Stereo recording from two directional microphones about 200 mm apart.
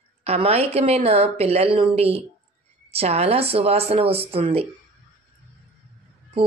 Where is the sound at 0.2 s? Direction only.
30° right (ahead or behind).